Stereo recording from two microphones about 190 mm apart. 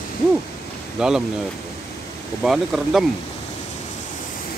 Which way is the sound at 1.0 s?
5° right (ahead or behind).